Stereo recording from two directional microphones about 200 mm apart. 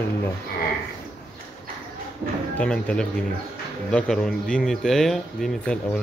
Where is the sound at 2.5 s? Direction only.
5° left (ahead or behind).